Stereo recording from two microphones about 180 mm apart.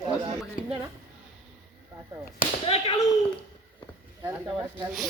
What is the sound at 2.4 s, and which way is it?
Speech, 30° left (ahead or behind).